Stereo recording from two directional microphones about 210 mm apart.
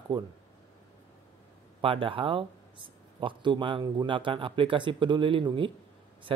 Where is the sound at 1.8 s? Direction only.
25° right (ahead or behind).